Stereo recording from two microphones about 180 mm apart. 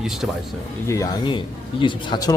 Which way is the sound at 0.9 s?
20° left (ahead or behind).